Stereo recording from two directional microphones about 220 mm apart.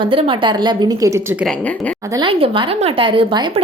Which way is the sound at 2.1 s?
25° right (ahead or behind).